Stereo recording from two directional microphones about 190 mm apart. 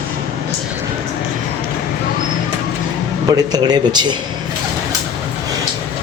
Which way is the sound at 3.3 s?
20° right (ahead or behind).